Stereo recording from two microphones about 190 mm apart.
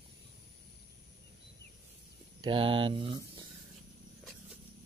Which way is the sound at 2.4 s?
30° right (ahead or behind).